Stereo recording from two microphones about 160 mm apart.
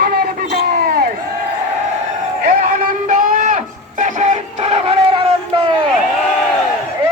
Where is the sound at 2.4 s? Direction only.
60° right (ahead or behind); by 5.2 s 40° right (ahead or behind).